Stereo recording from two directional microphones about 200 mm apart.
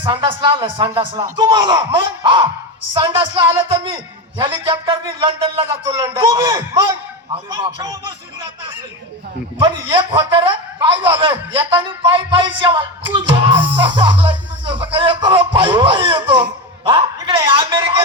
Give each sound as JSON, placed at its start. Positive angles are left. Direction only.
{"t": 0.0, "sound": "a man's voice", "side_deg": -25}
{"t": 9.6, "sound": "a man's voice", "side_deg": -25}